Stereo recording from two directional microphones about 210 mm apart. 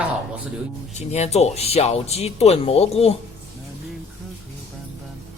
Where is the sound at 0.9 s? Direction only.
30° left (ahead or behind).